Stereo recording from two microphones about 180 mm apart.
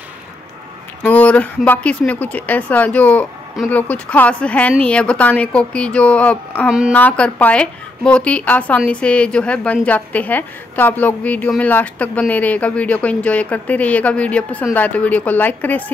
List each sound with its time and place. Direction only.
1.0 s a woman's voice: 10° left (ahead or behind)